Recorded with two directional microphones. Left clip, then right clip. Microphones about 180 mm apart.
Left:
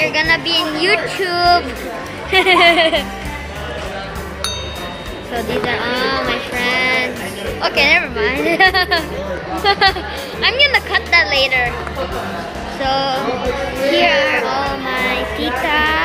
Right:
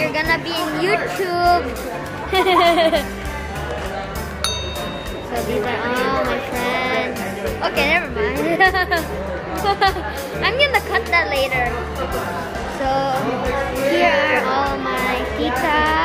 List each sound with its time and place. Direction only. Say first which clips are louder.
0.0 s a woman's voice: left 4 dB; 5° right (ahead or behind)
5.7 s a woman's voice: left 3 dB; 10° right (ahead or behind)
10.4 s speech: left 4 dB; 15° right (ahead or behind)
12.8 s speech: left 3 dB; 15° right (ahead or behind)